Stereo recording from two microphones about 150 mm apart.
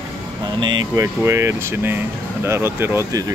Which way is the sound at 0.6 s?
20° right (ahead or behind).